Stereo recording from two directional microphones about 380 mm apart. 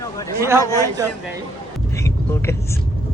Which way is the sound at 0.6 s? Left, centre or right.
Centre.